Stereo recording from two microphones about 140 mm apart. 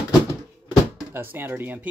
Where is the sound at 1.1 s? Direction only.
15° right (ahead or behind).